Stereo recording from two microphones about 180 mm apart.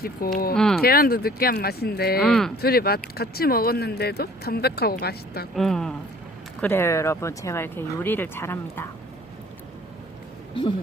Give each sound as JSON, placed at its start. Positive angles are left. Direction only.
{"t": 0.2, "sound": "speech", "side_deg": 55}
{"t": 0.5, "sound": "speech", "side_deg": 5}
{"t": 0.8, "sound": "speech", "side_deg": 55}
{"t": 2.2, "sound": "speech", "side_deg": 5}
{"t": 2.6, "sound": "speech", "side_deg": 60}
{"t": 5.5, "sound": "speech", "side_deg": 0}
{"t": 10.5, "sound": "speech", "side_deg": 30}